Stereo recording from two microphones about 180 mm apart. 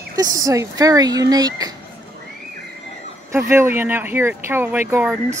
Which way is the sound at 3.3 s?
15° right (ahead or behind).